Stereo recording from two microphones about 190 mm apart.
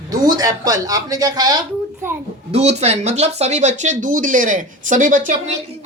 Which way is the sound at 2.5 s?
35° right (ahead or behind).